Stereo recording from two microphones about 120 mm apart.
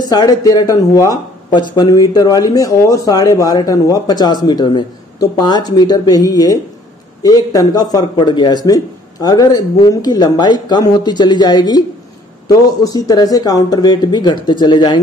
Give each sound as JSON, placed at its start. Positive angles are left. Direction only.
{"t": 0.1, "sound": "speech", "side_deg": 30}
{"t": 1.5, "sound": "speech", "side_deg": 40}